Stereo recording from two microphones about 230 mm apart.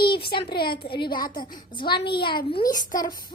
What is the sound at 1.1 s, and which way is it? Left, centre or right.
Speech, left.